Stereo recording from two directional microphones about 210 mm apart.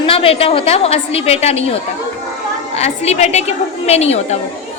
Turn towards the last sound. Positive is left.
turn(degrees=30)  # may be behind; listen again after turning